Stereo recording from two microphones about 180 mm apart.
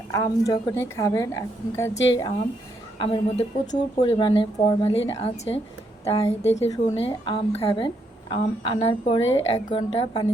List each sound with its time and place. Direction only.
0.1 s a woman's voice: 15° left (ahead or behind)
3.0 s a woman's voice: 30° left (ahead or behind)